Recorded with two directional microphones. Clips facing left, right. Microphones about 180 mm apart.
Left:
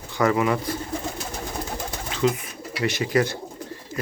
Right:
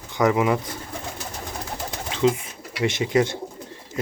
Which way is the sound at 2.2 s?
25° right (ahead or behind).